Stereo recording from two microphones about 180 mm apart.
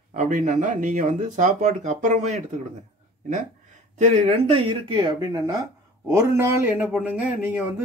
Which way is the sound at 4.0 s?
35° right (ahead or behind).